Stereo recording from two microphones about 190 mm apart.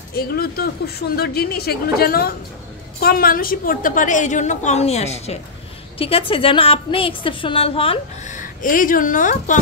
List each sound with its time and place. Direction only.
0.1 s a woman's voice: 55° left (ahead or behind)